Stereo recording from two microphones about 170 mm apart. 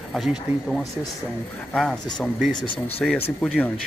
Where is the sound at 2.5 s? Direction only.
30° left (ahead or behind).